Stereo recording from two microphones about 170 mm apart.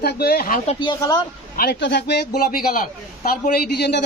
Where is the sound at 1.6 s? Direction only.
85° left.